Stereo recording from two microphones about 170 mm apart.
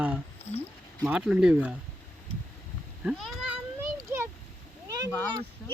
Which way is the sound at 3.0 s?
5° right (ahead or behind).